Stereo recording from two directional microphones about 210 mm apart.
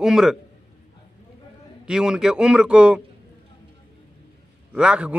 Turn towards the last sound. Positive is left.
turn(degrees=-5)  # may be behind; listen again after turning